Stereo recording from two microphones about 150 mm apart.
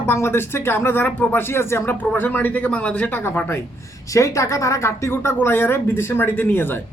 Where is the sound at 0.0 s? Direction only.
15° left (ahead or behind).